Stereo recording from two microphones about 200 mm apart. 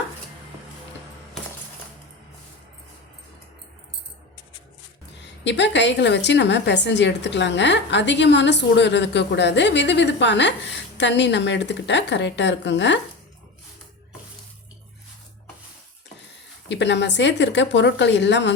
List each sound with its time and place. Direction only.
5.2 s a woman's voice: 60° left (ahead or behind)
16.6 s a woman's voice: 60° left (ahead or behind)